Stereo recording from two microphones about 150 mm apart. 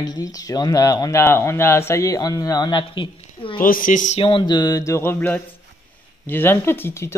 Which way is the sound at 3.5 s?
70° left (ahead or behind).